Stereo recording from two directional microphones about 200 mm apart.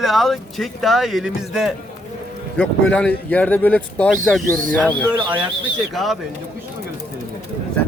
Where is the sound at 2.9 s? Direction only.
5° left (ahead or behind).